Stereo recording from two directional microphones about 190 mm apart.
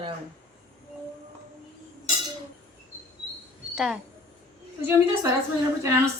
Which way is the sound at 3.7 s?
Centre (ahead or behind).